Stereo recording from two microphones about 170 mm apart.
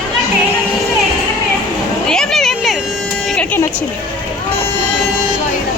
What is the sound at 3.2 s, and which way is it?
Vehicle, 5° left (ahead or behind).